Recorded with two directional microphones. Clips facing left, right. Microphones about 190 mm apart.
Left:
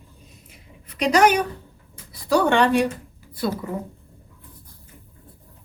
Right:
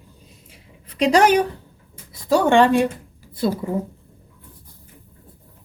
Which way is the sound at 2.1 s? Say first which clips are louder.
Right 3 dB; 25° right (ahead or behind).